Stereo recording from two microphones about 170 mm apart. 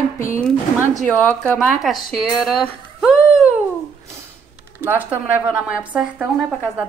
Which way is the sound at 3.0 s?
5° right (ahead or behind).